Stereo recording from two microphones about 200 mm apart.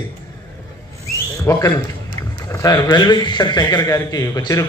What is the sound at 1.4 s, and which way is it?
A man's voice, 15° left (ahead or behind).